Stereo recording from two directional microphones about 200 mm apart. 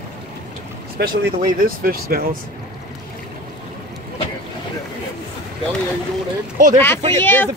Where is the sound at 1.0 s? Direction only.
50° right (ahead or behind).